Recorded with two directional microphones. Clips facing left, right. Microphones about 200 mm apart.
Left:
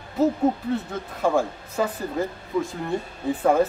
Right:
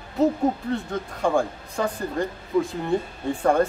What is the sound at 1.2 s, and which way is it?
Speech, 5° left (ahead or behind).